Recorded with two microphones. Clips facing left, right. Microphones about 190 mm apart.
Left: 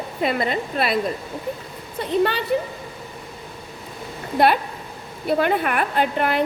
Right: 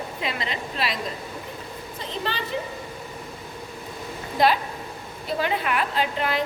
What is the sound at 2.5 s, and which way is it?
Speech, 55° left (ahead or behind).